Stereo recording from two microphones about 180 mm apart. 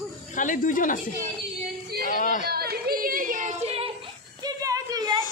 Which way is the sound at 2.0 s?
45° left (ahead or behind).